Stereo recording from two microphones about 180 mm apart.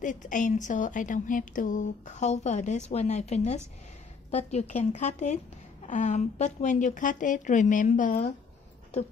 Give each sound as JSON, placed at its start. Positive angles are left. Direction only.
{"t": 0.0, "sound": "a woman's voice", "side_deg": 45}